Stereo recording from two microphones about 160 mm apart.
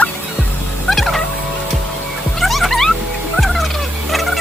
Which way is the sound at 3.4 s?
Centre (ahead or behind).